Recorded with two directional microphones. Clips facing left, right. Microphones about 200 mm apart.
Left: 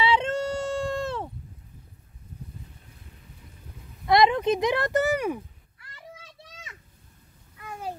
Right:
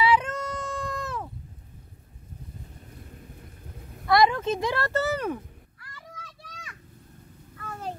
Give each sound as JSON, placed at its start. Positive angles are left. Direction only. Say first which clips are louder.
{"t": 0.0, "sound": "a sound", "louder": "even", "side_deg": 25}
{"t": 4.1, "sound": "speech", "louder": "left 2 dB", "side_deg": 20}
{"t": 5.8, "sound": "children playing", "louder": "left 1 dB", "side_deg": 25}
{"t": 7.5, "sound": "babbling", "louder": "even", "side_deg": 15}